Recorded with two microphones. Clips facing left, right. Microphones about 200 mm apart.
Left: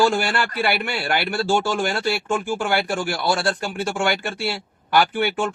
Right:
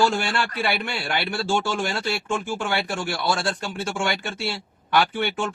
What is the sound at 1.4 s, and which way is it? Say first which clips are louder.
Speech: left 3 dB; 40° left (ahead or behind).